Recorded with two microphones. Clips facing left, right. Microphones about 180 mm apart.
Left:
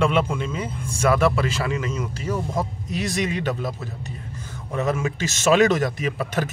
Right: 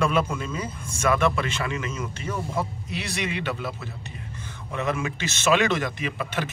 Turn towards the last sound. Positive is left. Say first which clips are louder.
# left 4 dB
turn(degrees=40)  # may be behind; listen again after turning